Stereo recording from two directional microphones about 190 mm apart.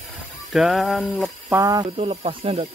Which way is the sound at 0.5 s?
Centre (ahead or behind).